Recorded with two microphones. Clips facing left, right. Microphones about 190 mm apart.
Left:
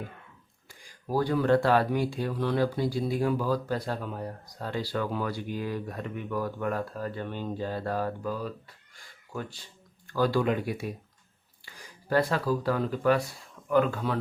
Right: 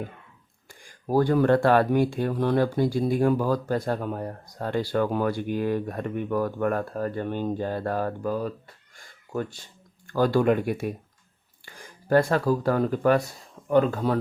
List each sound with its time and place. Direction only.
0.9 s speech: 50° right (ahead or behind)
13.7 s speech: 35° right (ahead or behind)